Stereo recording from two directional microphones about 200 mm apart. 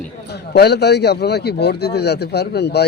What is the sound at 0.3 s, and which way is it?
A man's voice, 55° left (ahead or behind).